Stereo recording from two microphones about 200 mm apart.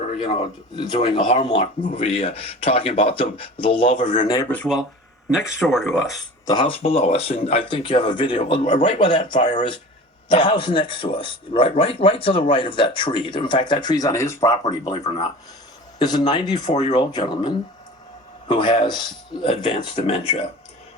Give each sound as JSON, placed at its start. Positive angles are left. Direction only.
{"t": 0.8, "sound": "a man's voice", "side_deg": 25}
{"t": 3.9, "sound": "speech", "side_deg": 40}
{"t": 4.3, "sound": "speech", "side_deg": 15}
{"t": 6.4, "sound": "a man's voice", "side_deg": 20}